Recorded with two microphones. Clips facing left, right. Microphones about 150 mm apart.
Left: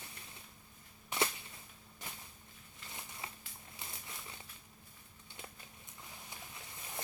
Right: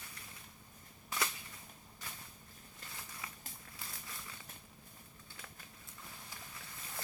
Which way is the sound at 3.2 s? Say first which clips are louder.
Left 1 dB; 25° left (ahead or behind).